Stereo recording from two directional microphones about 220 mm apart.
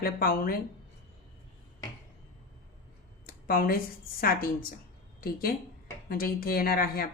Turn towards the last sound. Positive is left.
turn(degrees=40)  # may be behind; listen again after turning